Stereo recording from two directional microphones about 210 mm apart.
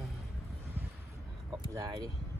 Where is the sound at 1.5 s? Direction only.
15° right (ahead or behind).